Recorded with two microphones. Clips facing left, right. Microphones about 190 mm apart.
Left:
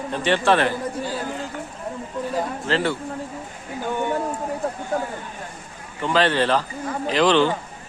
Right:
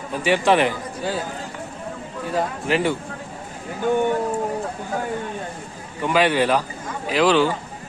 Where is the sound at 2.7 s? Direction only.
15° right (ahead or behind).